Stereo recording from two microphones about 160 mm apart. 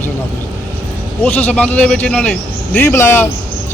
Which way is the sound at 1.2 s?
10° left (ahead or behind).